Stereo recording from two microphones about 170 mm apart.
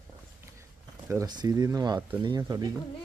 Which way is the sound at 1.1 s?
20° right (ahead or behind).